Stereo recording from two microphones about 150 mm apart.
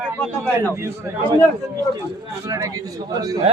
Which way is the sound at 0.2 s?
10° left (ahead or behind).